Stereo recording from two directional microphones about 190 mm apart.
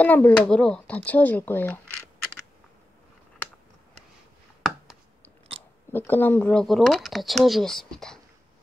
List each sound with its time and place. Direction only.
0.0 s speech: 10° left (ahead or behind)
4.6 s chopping: centre (ahead or behind)
5.5 s chewing: 30° right (ahead or behind)
5.9 s speech: 10° left (ahead or behind)